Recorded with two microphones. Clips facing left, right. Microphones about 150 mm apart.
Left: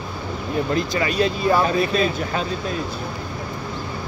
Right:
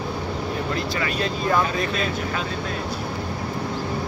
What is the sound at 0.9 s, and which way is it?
Speech, 20° left (ahead or behind).